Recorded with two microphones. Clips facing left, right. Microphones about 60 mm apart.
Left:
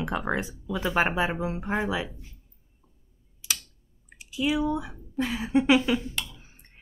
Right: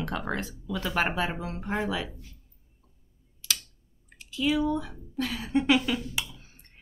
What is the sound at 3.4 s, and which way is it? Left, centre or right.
Computer keyboard, centre.